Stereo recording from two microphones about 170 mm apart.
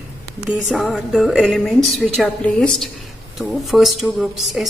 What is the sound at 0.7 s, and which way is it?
Speech, centre (ahead or behind).